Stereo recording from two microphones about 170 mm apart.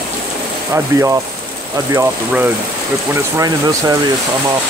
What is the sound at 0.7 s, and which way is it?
Speech, 20° right (ahead or behind).